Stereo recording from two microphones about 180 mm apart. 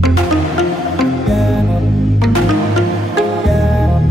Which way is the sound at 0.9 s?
Centre (ahead or behind).